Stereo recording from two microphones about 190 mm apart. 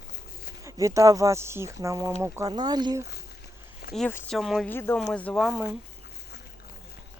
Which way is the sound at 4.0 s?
10° left (ahead or behind).